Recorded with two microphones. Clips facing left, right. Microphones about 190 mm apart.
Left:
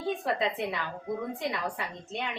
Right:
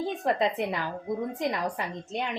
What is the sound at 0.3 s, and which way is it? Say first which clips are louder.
A woman's voice: right 3 dB; 40° right (ahead or behind).